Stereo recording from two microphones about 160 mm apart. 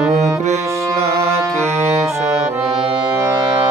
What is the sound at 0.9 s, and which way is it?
Music, 40° right (ahead or behind).